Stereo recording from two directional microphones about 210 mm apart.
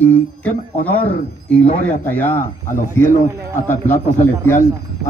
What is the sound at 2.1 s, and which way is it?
Speech, 10° left (ahead or behind).